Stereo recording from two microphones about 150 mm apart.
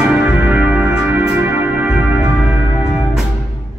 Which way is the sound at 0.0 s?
10° right (ahead or behind).